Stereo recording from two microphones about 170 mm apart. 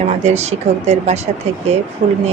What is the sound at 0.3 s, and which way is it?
A woman's voice, 40° right (ahead or behind).